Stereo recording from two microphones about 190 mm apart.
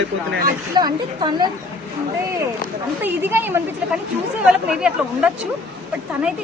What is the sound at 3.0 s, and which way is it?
Speech, 10° right (ahead or behind).